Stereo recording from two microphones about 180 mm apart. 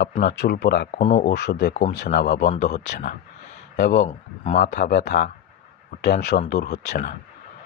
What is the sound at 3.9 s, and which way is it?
Speech, 40° left (ahead or behind).